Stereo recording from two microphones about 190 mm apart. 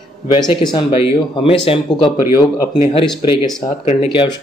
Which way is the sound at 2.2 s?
15° right (ahead or behind).